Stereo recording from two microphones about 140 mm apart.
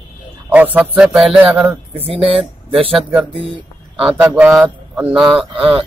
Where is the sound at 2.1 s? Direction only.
45° right (ahead or behind).